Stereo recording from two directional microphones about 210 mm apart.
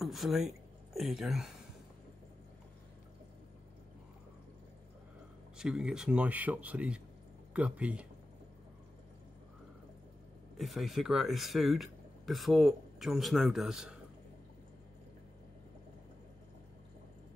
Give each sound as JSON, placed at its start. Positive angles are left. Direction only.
{"t": 0.0, "sound": "speech", "side_deg": 0}
{"t": 5.6, "sound": "speech", "side_deg": -5}
{"t": 10.6, "sound": "speech", "side_deg": 0}